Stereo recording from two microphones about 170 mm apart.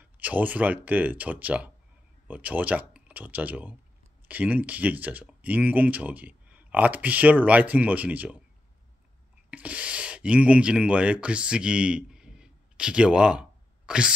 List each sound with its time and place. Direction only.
0.0 s speech: 10° right (ahead or behind)
9.5 s speech: 5° right (ahead or behind)